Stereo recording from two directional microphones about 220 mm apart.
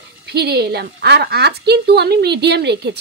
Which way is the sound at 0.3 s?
50° right (ahead or behind).